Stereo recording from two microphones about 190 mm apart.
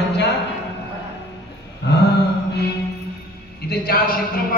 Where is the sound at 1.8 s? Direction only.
65° left (ahead or behind).